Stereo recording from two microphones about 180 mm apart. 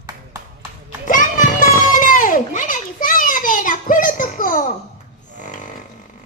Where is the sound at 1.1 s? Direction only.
45° left (ahead or behind).